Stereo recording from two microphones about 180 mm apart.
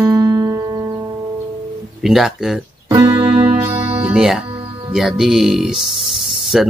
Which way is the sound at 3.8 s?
10° right (ahead or behind).